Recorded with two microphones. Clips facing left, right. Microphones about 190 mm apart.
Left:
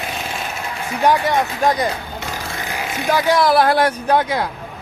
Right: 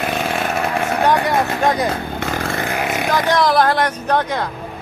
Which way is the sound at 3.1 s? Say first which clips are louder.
Left 1 dB; 10° left (ahead or behind).